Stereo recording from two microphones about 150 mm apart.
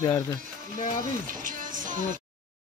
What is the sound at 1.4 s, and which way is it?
Music, 60° right (ahead or behind).